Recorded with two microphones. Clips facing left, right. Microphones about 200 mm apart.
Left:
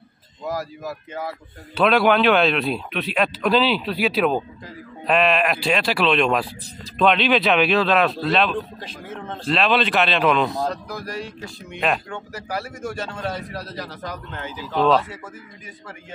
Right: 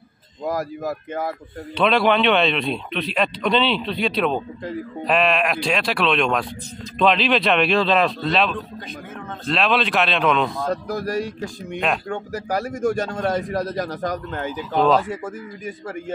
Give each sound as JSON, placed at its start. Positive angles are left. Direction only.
{"t": 0.4, "sound": "a man's voice", "side_deg": -50}
{"t": 1.8, "sound": "speech", "side_deg": 5}
{"t": 10.7, "sound": "a man's voice", "side_deg": -45}
{"t": 14.8, "sound": "speech", "side_deg": 0}
{"t": 15.0, "sound": "a man's voice", "side_deg": -50}